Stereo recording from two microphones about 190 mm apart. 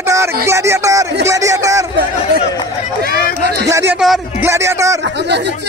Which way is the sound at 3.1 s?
50° left (ahead or behind).